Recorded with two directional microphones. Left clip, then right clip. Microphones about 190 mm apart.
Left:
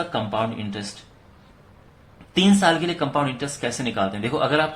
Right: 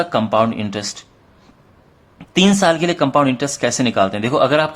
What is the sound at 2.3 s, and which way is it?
Speech, 40° right (ahead or behind).